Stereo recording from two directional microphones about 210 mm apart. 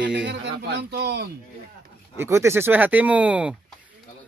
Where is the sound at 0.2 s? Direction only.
55° right (ahead or behind).